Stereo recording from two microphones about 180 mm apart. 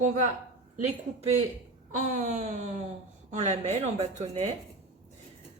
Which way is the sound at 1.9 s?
45° right (ahead or behind).